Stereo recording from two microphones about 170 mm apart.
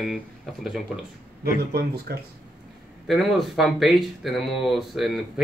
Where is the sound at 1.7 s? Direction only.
70° right (ahead or behind).